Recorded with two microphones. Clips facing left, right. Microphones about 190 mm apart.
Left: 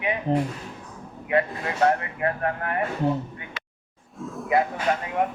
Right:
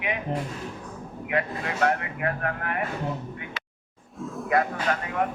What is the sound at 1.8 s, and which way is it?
Speech, 35° left (ahead or behind).